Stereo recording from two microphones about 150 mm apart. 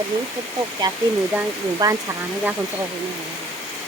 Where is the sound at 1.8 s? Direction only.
25° right (ahead or behind).